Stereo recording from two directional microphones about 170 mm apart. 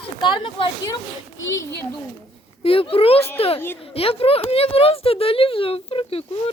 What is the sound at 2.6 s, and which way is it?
A woman's voice, 35° left (ahead or behind).